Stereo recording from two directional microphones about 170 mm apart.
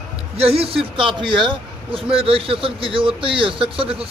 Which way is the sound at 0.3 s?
35° right (ahead or behind).